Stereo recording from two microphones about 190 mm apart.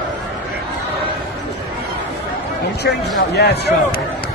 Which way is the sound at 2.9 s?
55° left (ahead or behind).